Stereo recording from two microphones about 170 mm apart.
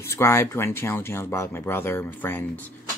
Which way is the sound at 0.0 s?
15° left (ahead or behind).